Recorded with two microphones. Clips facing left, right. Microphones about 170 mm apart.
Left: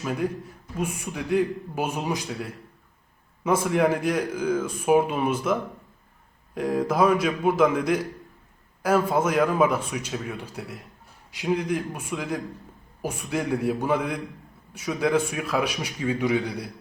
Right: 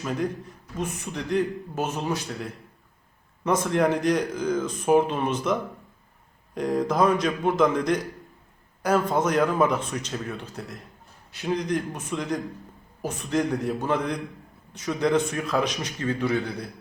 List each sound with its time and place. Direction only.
0.0 s a man's voice: 5° left (ahead or behind)